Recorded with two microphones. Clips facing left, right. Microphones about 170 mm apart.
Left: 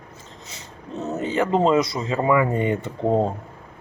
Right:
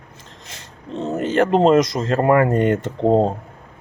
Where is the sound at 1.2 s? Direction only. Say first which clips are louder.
Right 5 dB; 80° right.